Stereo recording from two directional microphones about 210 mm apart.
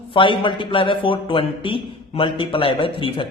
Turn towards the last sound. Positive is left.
turn(degrees=25)  # may be behind; listen again after turning